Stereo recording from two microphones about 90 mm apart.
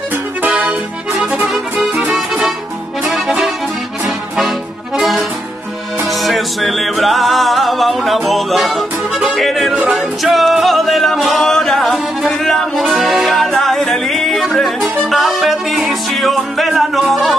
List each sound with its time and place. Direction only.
0.4 s music: 15° right (ahead or behind)
1.5 s music: 5° right (ahead or behind)
4.4 s accordion: centre (ahead or behind)
6.0 s music: centre (ahead or behind)